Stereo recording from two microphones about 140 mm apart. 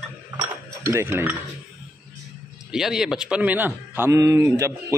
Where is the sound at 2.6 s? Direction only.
5° right (ahead or behind).